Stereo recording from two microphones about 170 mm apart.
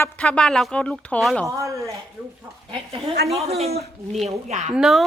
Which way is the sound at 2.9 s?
35° right (ahead or behind).